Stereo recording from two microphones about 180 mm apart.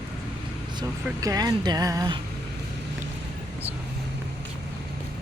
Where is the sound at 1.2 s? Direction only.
20° right (ahead or behind).